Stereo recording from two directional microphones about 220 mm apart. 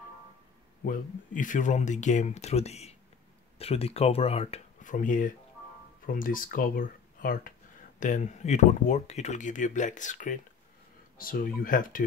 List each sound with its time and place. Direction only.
0.8 s speech: 35° left (ahead or behind)